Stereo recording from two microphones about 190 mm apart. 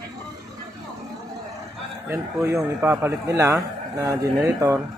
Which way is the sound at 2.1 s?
15° right (ahead or behind).